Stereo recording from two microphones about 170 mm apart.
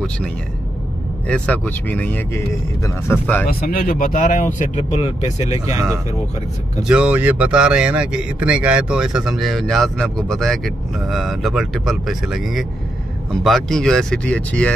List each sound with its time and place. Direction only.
1.2 s speech: 5° left (ahead or behind)
3.4 s speech: 60° left (ahead or behind); by 5.6 s 40° left (ahead or behind)
5.7 s speech: 15° right (ahead or behind)
6.8 s speech: 5° right (ahead or behind)